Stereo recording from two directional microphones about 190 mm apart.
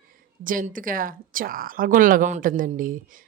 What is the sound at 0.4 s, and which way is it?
Speech, 45° right (ahead or behind).